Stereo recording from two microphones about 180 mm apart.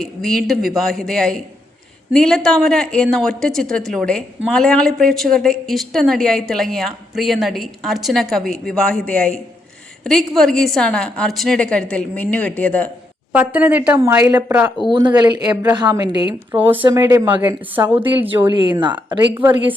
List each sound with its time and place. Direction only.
0.0 s a woman's voice: centre (ahead or behind)
13.3 s a woman's voice: 10° right (ahead or behind)
14.5 s a woman's voice: 5° right (ahead or behind)
14.9 s a woman's voice: 25° right (ahead or behind)
17.9 s a woman's voice: 25° right (ahead or behind)
18.2 s a woman's voice: 10° right (ahead or behind)
18.5 s a woman's voice: 25° right (ahead or behind)